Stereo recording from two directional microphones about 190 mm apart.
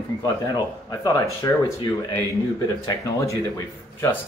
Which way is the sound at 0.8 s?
20° left (ahead or behind).